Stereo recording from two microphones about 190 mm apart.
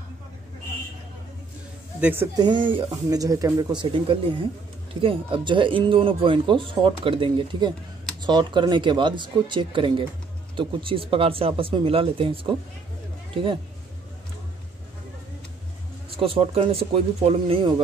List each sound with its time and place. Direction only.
2.0 s speech: 10° right (ahead or behind)
2.3 s speech: 25° right (ahead or behind)
16.1 s speech: 30° right (ahead or behind)